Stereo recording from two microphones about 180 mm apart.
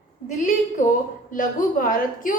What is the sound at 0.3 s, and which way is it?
A woman's voice, 45° left (ahead or behind).